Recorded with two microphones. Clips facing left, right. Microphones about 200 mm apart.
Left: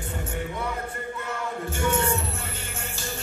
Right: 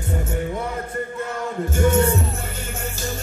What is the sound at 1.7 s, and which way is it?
Music, 40° right (ahead or behind).